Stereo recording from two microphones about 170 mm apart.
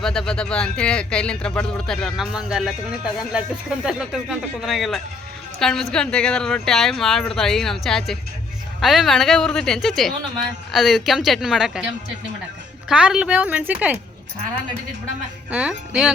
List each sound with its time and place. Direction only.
0.0 s speech: centre (ahead or behind)
3.8 s speech: 5° right (ahead or behind)
12.9 s a woman's voice: 5° right (ahead or behind)
15.4 s a woman's voice: 5° right (ahead or behind)